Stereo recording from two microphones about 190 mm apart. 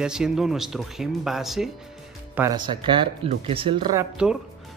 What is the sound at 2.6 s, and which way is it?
Speech, 25° right (ahead or behind).